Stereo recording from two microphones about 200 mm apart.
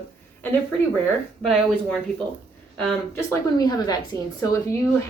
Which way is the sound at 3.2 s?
20° left (ahead or behind).